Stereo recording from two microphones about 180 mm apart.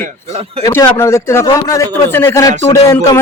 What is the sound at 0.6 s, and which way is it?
A man's voice, 15° left (ahead or behind).